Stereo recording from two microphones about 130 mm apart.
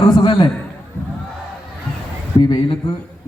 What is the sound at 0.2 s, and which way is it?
Speech, 35° left (ahead or behind).